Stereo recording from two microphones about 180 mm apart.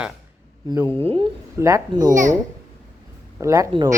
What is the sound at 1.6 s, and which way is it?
Speech, 15° right (ahead or behind).